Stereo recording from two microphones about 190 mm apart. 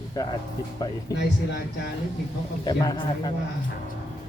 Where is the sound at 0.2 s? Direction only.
20° left (ahead or behind).